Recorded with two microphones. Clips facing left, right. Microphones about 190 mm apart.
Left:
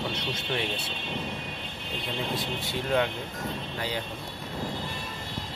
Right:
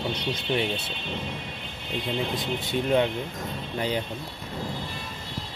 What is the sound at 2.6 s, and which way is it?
Speech, 20° right (ahead or behind).